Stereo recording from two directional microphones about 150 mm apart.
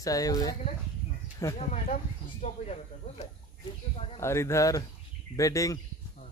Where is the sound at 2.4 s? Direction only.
45° left (ahead or behind).